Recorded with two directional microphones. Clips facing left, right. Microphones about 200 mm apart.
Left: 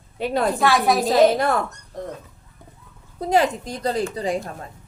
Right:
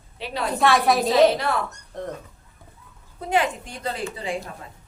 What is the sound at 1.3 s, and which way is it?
Speech, 50° left (ahead or behind).